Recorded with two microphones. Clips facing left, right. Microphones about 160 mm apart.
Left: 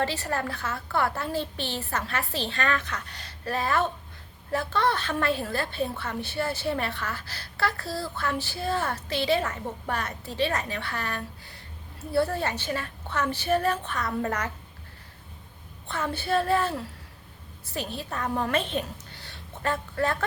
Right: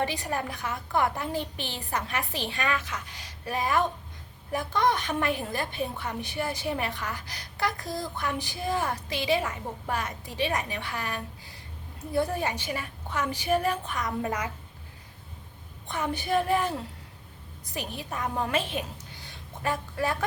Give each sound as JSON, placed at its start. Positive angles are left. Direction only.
{"t": 0.0, "sound": "a woman's voice", "side_deg": -15}
{"t": 15.9, "sound": "a woman's voice", "side_deg": -15}